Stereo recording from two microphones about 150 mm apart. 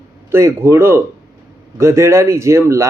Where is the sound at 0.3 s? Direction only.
15° right (ahead or behind).